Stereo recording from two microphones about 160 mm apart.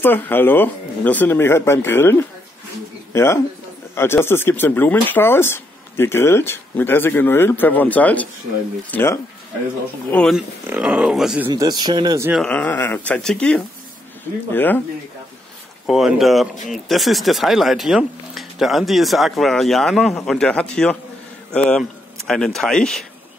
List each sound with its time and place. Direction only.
0.0 s speech: 15° left (ahead or behind)
10.1 s speech: 5° left (ahead or behind)
10.7 s speech: 5° right (ahead or behind)
11.4 s a man's voice: 25° right (ahead or behind)
12.4 s speech: 10° left (ahead or behind)
15.9 s speech: 5° right (ahead or behind)